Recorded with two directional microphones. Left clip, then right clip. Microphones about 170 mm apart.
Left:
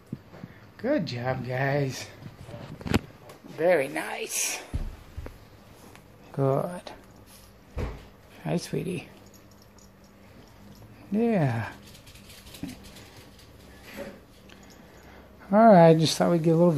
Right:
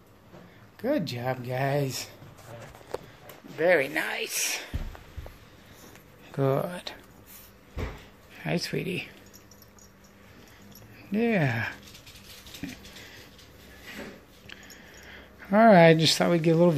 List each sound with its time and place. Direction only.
0.7 s speech: 10° right (ahead or behind)
3.5 s speech: centre (ahead or behind)
6.3 s speech: 5° right (ahead or behind)
8.5 s speech: 5° left (ahead or behind)
11.1 s speech: 5° left (ahead or behind)
12.6 s a sound: centre (ahead or behind)
15.0 s speech: centre (ahead or behind)